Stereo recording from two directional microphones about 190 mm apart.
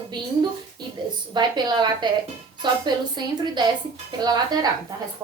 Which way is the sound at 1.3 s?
25° right (ahead or behind).